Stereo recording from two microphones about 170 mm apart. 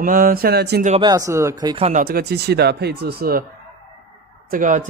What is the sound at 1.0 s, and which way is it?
Speech, 20° right (ahead or behind).